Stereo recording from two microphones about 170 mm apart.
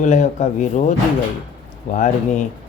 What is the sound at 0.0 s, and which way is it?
Speech, 45° left (ahead or behind).